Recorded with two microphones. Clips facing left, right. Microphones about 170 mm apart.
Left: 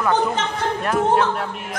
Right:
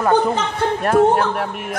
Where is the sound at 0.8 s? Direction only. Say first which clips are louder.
Right 4 dB; 50° right (ahead or behind).